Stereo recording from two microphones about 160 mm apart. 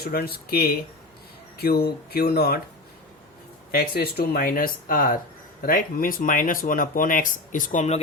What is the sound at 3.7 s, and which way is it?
Speech, 80° left.